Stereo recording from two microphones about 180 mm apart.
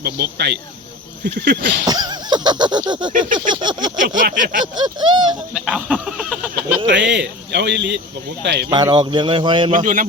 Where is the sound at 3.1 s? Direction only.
45° right (ahead or behind).